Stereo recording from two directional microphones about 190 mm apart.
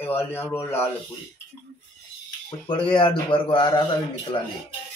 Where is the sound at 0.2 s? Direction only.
10° left (ahead or behind).